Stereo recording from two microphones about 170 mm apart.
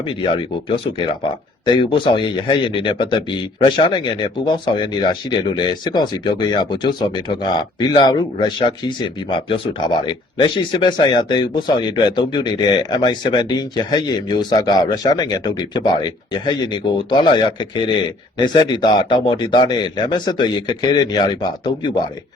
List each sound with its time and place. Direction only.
0.0 s speech: 30° left (ahead or behind)